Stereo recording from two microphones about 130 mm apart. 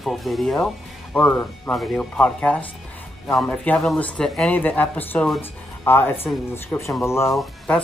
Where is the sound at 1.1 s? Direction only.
10° left (ahead or behind).